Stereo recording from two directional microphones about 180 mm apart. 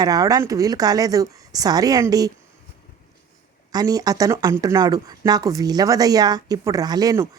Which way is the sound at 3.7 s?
20° right (ahead or behind).